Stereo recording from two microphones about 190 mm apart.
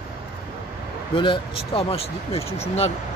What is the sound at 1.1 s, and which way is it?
Speech, 25° left (ahead or behind).